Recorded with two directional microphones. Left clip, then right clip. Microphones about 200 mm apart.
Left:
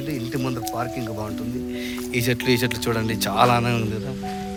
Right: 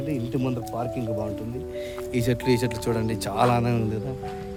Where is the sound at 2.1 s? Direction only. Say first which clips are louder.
Left 2 dB; 5° right (ahead or behind).